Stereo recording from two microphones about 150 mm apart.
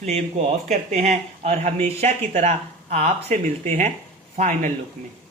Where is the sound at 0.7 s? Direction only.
50° right (ahead or behind).